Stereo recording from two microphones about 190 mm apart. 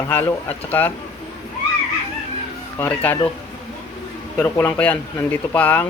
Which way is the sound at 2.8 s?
10° left (ahead or behind).